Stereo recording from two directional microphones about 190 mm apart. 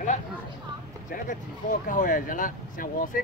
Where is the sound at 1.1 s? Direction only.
45° left (ahead or behind).